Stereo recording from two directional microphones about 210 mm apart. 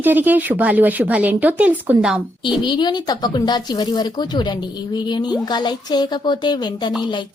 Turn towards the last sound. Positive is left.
turn(degrees=20)  # may be behind; listen again after turning